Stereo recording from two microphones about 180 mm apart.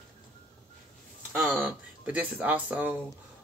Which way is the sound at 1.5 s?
10° right (ahead or behind).